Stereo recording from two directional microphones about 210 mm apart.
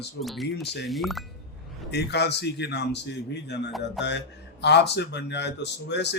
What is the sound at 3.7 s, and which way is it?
Speech, centre (ahead or behind).